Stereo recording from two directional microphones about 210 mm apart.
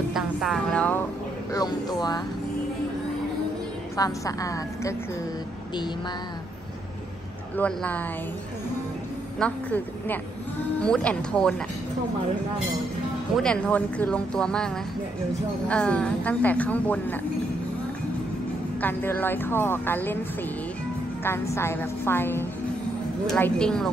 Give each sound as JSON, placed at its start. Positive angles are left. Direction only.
{"t": 0.1, "sound": "speech", "side_deg": 0}
{"t": 1.5, "sound": "speech", "side_deg": 20}
{"t": 3.9, "sound": "a woman's voice", "side_deg": 15}
{"t": 7.5, "sound": "a woman's voice", "side_deg": 5}
{"t": 9.4, "sound": "a woman's voice", "side_deg": 5}
{"t": 13.4, "sound": "speech", "side_deg": 5}
{"t": 15.7, "sound": "a woman's voice", "side_deg": 5}
{"t": 18.8, "sound": "a woman's voice", "side_deg": 10}
{"t": 21.2, "sound": "a woman's voice", "side_deg": 10}